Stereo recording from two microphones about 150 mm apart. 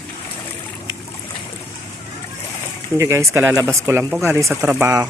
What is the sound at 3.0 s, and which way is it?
Speech, 20° right (ahead or behind).